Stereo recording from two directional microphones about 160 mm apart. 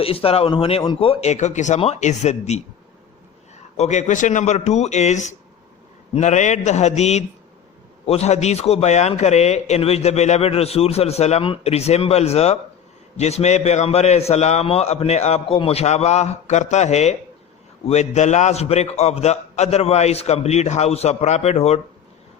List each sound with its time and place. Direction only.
0.0 s a man's voice: 35° left (ahead or behind)
3.8 s a man's voice: 45° left (ahead or behind)